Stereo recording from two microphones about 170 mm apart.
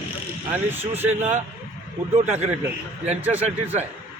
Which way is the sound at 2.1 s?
40° right (ahead or behind).